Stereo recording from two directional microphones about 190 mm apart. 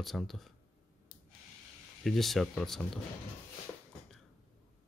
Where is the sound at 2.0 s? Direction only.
Centre (ahead or behind).